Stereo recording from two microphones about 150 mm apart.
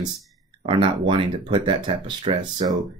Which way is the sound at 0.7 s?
35° right (ahead or behind).